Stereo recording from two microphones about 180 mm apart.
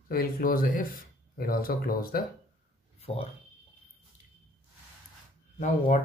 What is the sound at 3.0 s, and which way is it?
Speech, 35° left (ahead or behind).